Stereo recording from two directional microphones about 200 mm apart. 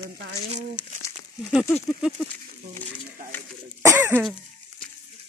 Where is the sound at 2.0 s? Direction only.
5° right (ahead or behind).